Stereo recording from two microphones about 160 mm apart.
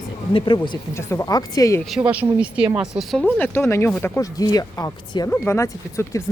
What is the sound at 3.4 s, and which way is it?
Speech, 15° left (ahead or behind).